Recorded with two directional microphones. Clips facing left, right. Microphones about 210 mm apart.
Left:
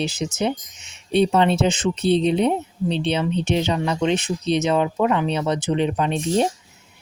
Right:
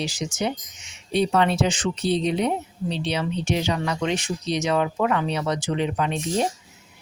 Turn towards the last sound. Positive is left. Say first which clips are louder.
# left 4 dB
turn(degrees=25)  # may be behind; listen again after turning